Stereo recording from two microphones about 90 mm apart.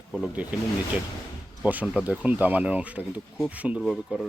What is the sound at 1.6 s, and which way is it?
Speech, 15° right (ahead or behind).